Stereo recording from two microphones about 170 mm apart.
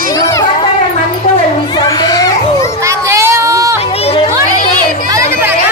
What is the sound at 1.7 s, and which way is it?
Children playing, 25° left (ahead or behind).